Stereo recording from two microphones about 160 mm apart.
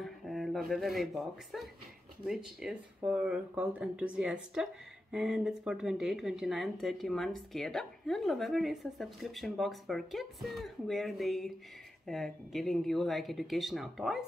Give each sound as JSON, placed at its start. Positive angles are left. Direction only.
{"t": 0.0, "sound": "speech", "side_deg": 0}